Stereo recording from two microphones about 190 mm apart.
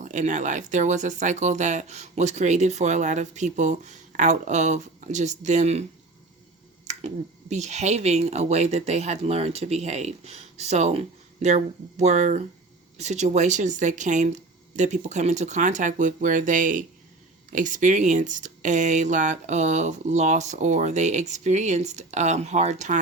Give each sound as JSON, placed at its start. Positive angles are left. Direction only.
{"t": 0.0, "sound": "speech", "side_deg": -40}
{"t": 6.8, "sound": "speech", "side_deg": -35}